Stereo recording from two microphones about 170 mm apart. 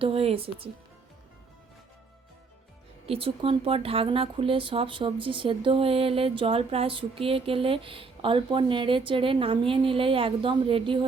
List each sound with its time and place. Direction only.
0.0 s speech: 35° right (ahead or behind)
3.1 s speech: 35° right (ahead or behind)